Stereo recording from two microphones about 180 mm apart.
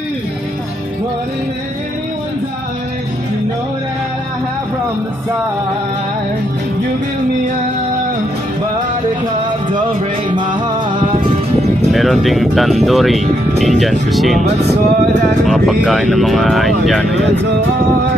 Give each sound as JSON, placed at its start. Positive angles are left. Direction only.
{"t": 10.3, "sound": "music", "side_deg": -25}
{"t": 11.9, "sound": "speech", "side_deg": 0}
{"t": 14.7, "sound": "speech", "side_deg": -40}
{"t": 15.4, "sound": "speech", "side_deg": 0}